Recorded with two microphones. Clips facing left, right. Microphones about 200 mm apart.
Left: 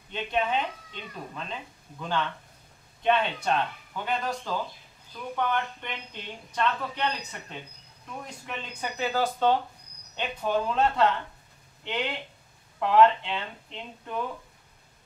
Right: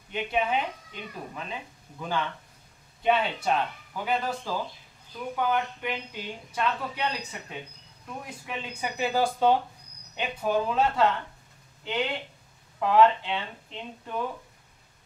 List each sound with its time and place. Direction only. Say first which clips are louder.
0.1 s speech: right 1 dB; 10° right (ahead or behind)